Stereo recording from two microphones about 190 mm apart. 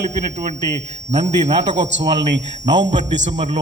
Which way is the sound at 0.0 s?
40° right (ahead or behind).